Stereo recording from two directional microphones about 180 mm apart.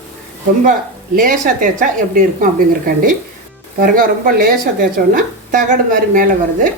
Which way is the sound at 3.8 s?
50° right (ahead or behind).